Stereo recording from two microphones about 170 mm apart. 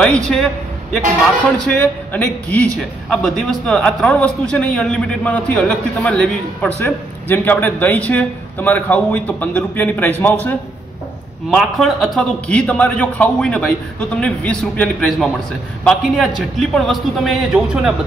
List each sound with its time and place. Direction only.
0.0 s a man's voice: 5° left (ahead or behind)
1.6 s a man's voice: 10° left (ahead or behind)
11.5 s a man's voice: centre (ahead or behind)